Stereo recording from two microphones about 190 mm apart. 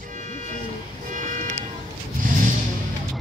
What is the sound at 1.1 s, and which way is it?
Vehicle, 40° right (ahead or behind).